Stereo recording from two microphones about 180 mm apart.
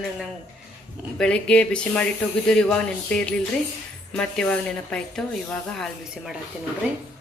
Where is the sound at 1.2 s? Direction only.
5° left (ahead or behind).